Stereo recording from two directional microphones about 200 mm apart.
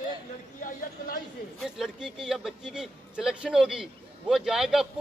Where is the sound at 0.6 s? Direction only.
45° left (ahead or behind).